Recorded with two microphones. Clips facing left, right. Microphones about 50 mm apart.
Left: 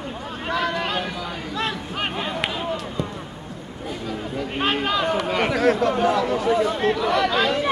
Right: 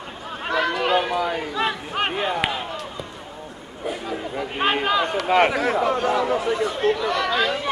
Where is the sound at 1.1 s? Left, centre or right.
Right.